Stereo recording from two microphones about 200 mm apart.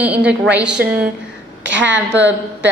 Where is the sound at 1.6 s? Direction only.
65° right (ahead or behind).